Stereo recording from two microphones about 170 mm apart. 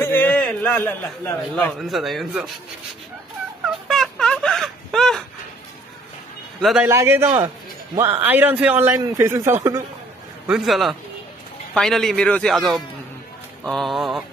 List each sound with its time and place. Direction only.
0.0 s a man's voice: 10° left (ahead or behind)
3.9 s a sound: centre (ahead or behind)
6.6 s speech: 5° right (ahead or behind)
6.9 s a man's voice: 15° right (ahead or behind)
10.4 s speech: 5° right (ahead or behind)